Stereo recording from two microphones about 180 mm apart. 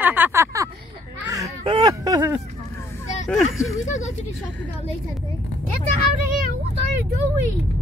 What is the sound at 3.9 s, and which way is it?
Speech, 40° left (ahead or behind).